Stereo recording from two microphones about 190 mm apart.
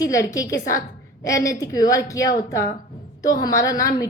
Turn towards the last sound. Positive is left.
turn(degrees=20)  # may be behind; listen again after turning